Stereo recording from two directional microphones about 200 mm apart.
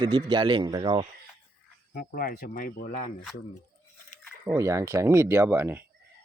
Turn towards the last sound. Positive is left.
turn(degrees=-10)  # may be behind; listen again after turning